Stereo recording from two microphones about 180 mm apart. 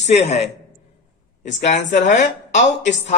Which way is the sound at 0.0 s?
40° left (ahead or behind).